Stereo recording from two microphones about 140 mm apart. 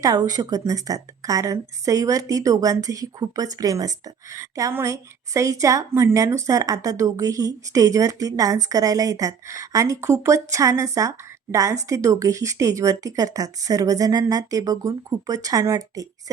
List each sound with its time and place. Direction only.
0.0 s a woman's voice: 25° right (ahead or behind)